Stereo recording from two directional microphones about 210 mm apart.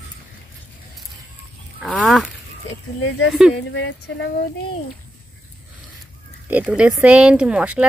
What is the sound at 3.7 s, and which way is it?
Speech, 60° left (ahead or behind).